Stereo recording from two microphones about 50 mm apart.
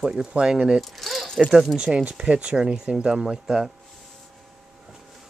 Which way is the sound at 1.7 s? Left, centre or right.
Centre.